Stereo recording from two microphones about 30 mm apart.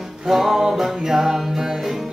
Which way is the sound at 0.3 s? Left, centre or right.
Centre.